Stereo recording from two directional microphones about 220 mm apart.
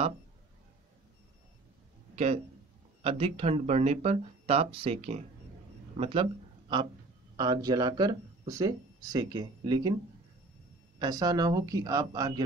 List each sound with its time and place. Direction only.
2.1 s a man's voice: 30° right (ahead or behind)
7.3 s speech: 20° right (ahead or behind)
11.0 s speech: 15° right (ahead or behind)